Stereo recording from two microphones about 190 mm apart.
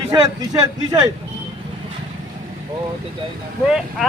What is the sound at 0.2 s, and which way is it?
Speech, 20° right (ahead or behind).